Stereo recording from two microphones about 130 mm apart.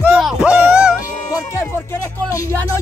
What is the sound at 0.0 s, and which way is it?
Music, 5° right (ahead or behind).